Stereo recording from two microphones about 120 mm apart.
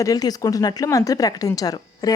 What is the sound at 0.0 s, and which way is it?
A woman's voice, 30° left (ahead or behind).